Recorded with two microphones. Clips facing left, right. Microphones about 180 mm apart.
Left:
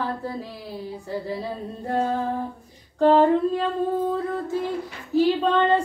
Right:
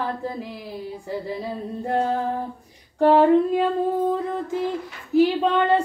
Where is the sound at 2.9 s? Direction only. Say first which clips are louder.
Right 2 dB; 10° right (ahead or behind).